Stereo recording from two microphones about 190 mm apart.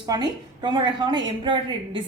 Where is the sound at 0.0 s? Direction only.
20° right (ahead or behind).